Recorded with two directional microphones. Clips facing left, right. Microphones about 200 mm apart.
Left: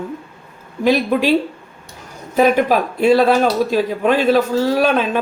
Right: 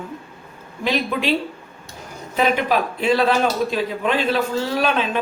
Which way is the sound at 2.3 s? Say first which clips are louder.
Left 5 dB; 45° left (ahead or behind).